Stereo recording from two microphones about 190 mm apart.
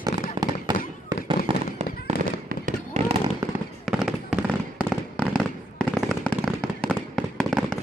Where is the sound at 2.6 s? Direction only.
35° right (ahead or behind).